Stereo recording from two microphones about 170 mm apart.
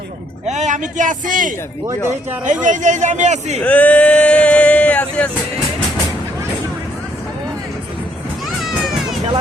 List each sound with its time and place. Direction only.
0.4 s a man's voice: 45° right (ahead or behind)
3.6 s speech: 10° left (ahead or behind)
8.6 s children playing: centre (ahead or behind)